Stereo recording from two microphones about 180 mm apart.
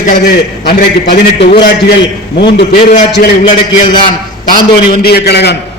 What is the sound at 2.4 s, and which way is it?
Speech, 70° left (ahead or behind).